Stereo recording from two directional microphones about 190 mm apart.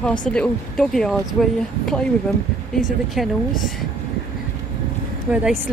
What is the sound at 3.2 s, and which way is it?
Speech, centre (ahead or behind).